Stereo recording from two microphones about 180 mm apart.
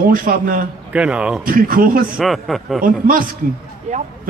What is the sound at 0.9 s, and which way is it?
Speech, 5° right (ahead or behind).